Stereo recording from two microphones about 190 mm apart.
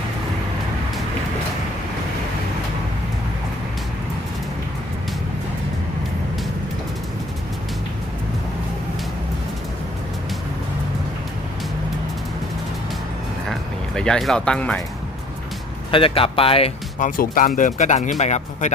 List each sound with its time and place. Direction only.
13.5 s a sound: 5° left (ahead or behind)
15.9 s speech: 30° left (ahead or behind)
17.0 s speech: 45° left (ahead or behind)